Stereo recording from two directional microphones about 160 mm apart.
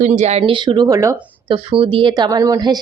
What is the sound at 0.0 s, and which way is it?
Speech, 45° right (ahead or behind).